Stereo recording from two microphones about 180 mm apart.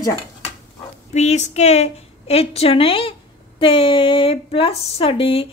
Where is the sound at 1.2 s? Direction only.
40° left (ahead or behind).